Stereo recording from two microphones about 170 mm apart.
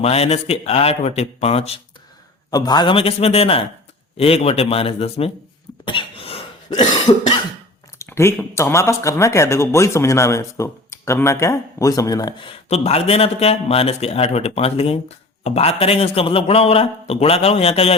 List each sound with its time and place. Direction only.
0.0 s a man's voice: 35° left (ahead or behind)
2.5 s a man's voice: 25° left (ahead or behind)
5.8 s cough: 30° left (ahead or behind)
7.9 s a man's voice: 15° left (ahead or behind); by 17.9 s 35° left (ahead or behind)